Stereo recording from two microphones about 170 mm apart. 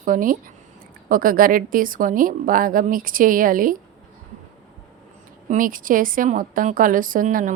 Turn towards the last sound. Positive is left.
turn(degrees=-50)  # may be behind; listen again after turning